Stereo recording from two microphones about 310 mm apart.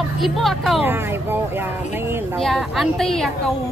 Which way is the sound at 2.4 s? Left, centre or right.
Centre.